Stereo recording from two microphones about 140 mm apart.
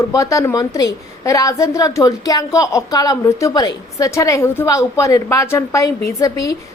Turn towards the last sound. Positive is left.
turn(degrees=25)  # may be behind; listen again after turning